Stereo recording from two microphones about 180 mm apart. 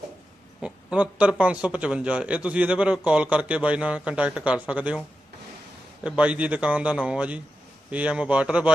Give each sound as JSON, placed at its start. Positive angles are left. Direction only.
{"t": 0.6, "sound": "speech", "side_deg": -5}